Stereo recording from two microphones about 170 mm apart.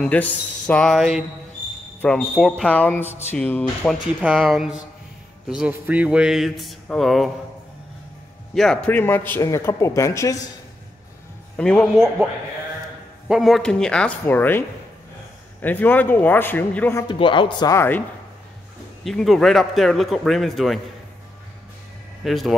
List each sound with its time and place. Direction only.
0.0 s a man's voice: 10° left (ahead or behind)
4.2 s a man's voice: 5° right (ahead or behind)
8.5 s speech: 5° left (ahead or behind)
11.5 s a man's voice: 5° left (ahead or behind)
13.3 s a man's voice: centre (ahead or behind)
15.6 s speech: 10° left (ahead or behind)
17.1 s speech: 30° left (ahead or behind); by 18.0 s 15° left (ahead or behind)
19.0 s a man's voice: centre (ahead or behind)
22.2 s speech: centre (ahead or behind)